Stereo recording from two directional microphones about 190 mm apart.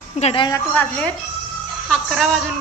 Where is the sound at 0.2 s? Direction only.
30° left (ahead or behind).